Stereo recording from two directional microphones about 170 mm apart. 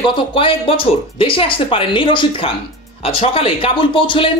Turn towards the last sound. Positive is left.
turn(degrees=30)  # may be behind; listen again after turning